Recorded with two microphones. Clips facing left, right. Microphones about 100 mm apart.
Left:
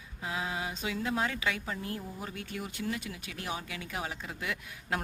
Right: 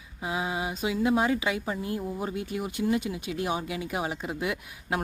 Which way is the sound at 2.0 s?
25° right (ahead or behind).